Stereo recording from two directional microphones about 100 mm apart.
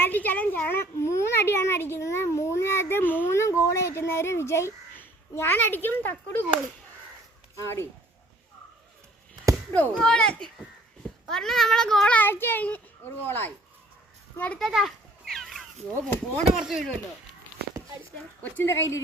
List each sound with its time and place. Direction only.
0.0 s a child's voice: 20° left (ahead or behind)
7.5 s speech: 30° left (ahead or behind)
9.7 s speech: 20° left (ahead or behind)
10.0 s speech: 5° left (ahead or behind)
14.6 s a sound: centre (ahead or behind)
16.6 s speech: 5° right (ahead or behind)
18.5 s speech: 25° left (ahead or behind)